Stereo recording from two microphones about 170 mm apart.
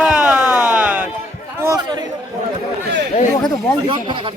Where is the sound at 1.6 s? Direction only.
20° right (ahead or behind).